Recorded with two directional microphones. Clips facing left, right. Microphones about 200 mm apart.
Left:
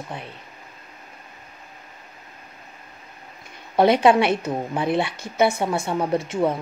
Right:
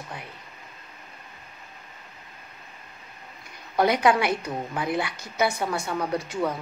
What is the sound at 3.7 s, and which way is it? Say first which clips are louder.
A woman's voice: left 5 dB; 25° left (ahead or behind).